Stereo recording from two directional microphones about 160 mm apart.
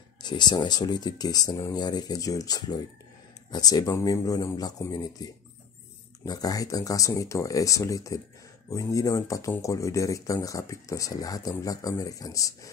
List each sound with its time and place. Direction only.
0.2 s speech: 25° left (ahead or behind)